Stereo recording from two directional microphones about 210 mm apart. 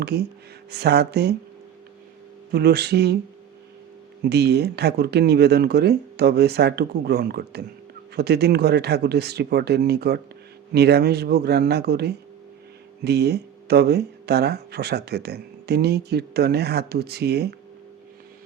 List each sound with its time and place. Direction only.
0.0 s speech: 50° right (ahead or behind)
2.5 s speech: 50° right (ahead or behind)
4.2 s speech: 50° right (ahead or behind)